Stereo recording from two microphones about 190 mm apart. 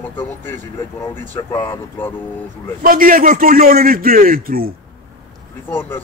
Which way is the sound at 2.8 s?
45° right (ahead or behind).